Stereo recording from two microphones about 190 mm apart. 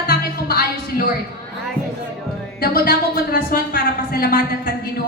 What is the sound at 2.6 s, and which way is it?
A woman's voice, 55° left (ahead or behind).